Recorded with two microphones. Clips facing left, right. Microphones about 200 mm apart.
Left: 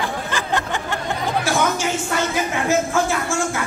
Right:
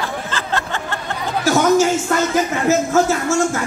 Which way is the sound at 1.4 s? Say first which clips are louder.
Right 10 dB; 40° right (ahead or behind).